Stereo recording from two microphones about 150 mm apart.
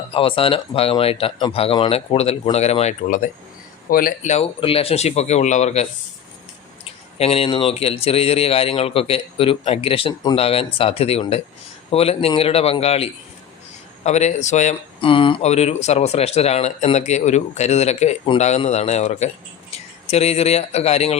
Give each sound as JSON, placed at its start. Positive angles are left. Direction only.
{"t": 0.1, "sound": "speech", "side_deg": 35}
{"t": 3.8, "sound": "speech", "side_deg": 70}
{"t": 4.3, "sound": "speech", "side_deg": 40}
{"t": 15.0, "sound": "speech", "side_deg": 35}